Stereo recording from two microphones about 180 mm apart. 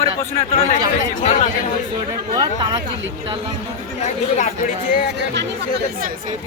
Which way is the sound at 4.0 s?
40° left (ahead or behind).